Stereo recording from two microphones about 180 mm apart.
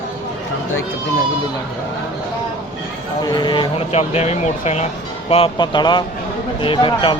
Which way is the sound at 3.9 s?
35° left (ahead or behind).